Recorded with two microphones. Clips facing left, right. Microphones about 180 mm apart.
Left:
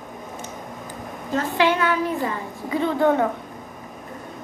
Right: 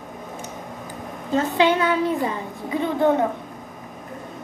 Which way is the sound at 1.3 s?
20° right (ahead or behind).